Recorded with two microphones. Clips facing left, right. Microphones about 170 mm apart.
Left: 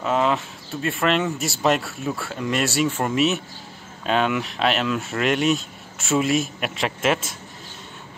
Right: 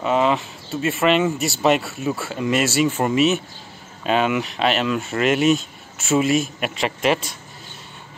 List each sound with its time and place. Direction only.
0.0 s speech: centre (ahead or behind)